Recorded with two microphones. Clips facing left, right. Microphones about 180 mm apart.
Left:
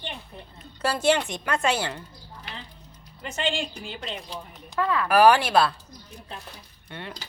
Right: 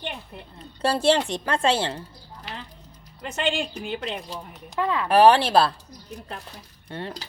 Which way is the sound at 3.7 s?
55° right (ahead or behind).